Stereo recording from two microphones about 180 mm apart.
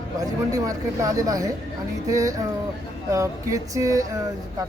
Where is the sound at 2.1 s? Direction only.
20° right (ahead or behind).